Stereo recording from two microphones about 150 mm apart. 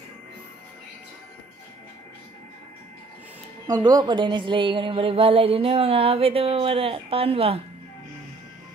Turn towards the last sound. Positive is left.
turn(degrees=-40)  # may be behind; listen again after turning